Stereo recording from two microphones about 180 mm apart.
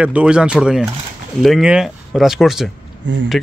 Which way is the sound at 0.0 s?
5° right (ahead or behind).